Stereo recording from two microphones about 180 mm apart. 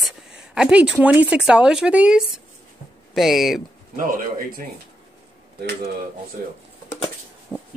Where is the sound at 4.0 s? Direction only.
50° right (ahead or behind).